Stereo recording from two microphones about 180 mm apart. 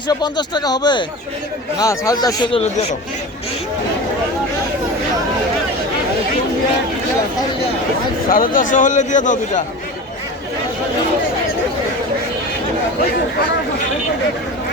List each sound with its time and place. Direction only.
0.1 s speech: 25° left (ahead or behind)
8.3 s a man's voice: 50° left (ahead or behind)